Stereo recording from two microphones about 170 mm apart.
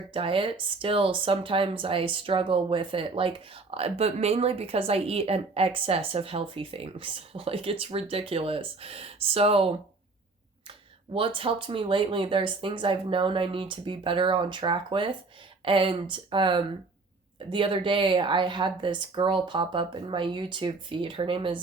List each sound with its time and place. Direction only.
0.1 s speech: 30° right (ahead or behind)